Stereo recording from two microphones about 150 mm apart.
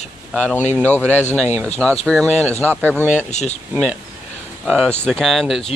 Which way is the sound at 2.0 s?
5° left (ahead or behind).